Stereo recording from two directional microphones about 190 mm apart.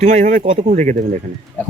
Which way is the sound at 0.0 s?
40° right (ahead or behind).